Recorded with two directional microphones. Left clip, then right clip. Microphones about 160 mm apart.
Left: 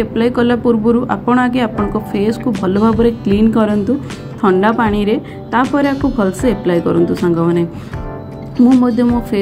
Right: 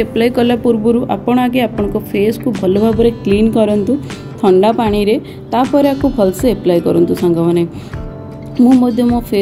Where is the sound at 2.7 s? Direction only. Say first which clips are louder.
Even; centre (ahead or behind).